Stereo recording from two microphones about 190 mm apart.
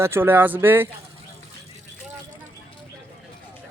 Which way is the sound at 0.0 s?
10° right (ahead or behind).